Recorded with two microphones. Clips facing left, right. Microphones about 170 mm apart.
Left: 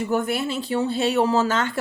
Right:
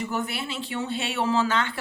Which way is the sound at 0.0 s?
50° left (ahead or behind).